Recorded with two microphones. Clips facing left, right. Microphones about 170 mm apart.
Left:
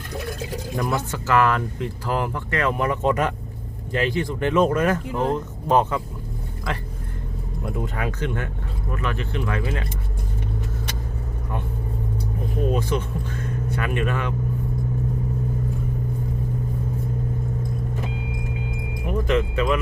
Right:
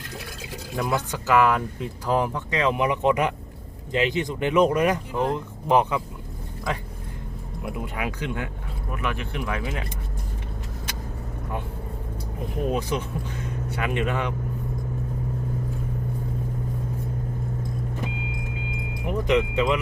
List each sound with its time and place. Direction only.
0.1 s pour: 45° left (ahead or behind)
0.9 s speech: 15° right (ahead or behind)
7.6 s speech: 10° right (ahead or behind)
12.7 s speech: 15° right (ahead or behind)
19.3 s speech: 20° right (ahead or behind)